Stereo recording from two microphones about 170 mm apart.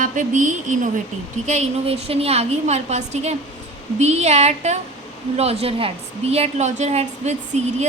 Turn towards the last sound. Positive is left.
turn(degrees=-40)  # may be behind; listen again after turning